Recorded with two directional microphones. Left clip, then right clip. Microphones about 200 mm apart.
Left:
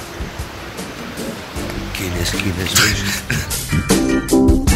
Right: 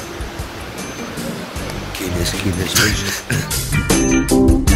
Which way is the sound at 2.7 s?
25° right (ahead or behind).